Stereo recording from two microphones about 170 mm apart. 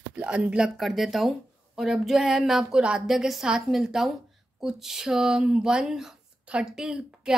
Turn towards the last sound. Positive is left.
turn(degrees=-5)  # may be behind; listen again after turning